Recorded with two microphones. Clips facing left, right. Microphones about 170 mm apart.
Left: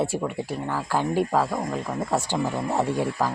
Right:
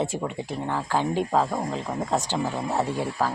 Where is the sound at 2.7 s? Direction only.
15° left (ahead or behind).